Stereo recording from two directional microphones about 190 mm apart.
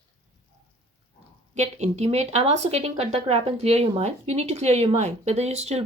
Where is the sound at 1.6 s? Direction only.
35° right (ahead or behind).